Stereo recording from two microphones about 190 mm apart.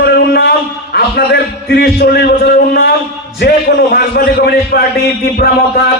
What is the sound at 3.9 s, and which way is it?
Speech, 55° left (ahead or behind).